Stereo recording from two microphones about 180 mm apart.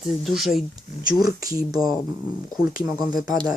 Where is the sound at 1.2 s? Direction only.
20° right (ahead or behind).